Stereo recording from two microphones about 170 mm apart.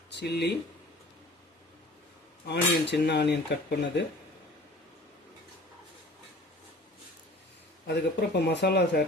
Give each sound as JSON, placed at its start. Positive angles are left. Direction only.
{"t": 0.1, "sound": "speech", "side_deg": 80}
{"t": 2.5, "sound": "speech", "side_deg": 85}
{"t": 7.9, "sound": "speech", "side_deg": 80}